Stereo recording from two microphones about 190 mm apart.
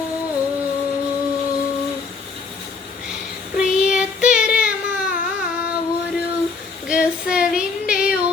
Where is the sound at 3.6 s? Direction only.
5° right (ahead or behind).